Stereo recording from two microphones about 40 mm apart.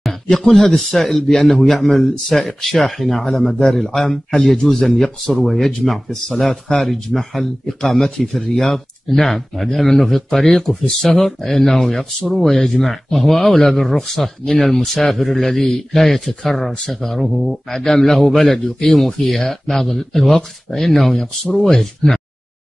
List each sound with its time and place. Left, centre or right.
0.3 s a man's voice: centre
7.6 s a man's voice: centre
12.5 s speech: left
12.8 s a man's voice: centre
17.6 s a man's voice: centre